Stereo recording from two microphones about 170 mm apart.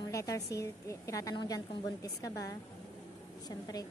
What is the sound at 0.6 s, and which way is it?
A woman's voice, 20° left (ahead or behind).